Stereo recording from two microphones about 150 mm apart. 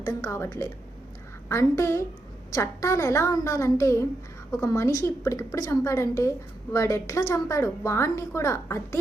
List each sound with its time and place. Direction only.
0.0 s a woman's voice: 20° left (ahead or behind)